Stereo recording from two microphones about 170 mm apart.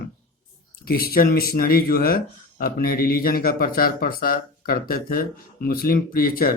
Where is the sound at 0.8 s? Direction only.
60° left (ahead or behind).